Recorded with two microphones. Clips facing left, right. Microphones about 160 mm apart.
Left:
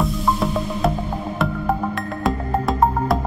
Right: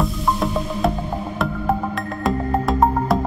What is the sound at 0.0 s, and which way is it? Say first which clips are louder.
Music: even; centre (ahead or behind).